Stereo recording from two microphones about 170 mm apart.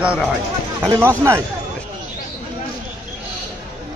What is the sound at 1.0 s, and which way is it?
Speech, 15° right (ahead or behind).